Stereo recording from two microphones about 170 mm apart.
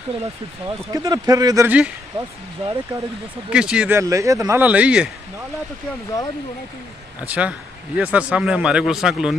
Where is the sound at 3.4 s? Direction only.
5° right (ahead or behind).